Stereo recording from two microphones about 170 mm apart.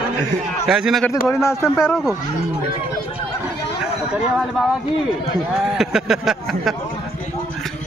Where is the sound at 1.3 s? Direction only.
15° left (ahead or behind).